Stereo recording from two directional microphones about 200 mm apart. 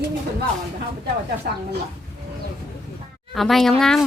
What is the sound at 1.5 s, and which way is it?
Speech, 50° right (ahead or behind).